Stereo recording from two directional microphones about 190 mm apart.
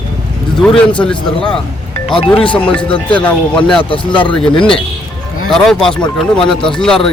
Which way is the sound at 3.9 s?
25° left (ahead or behind).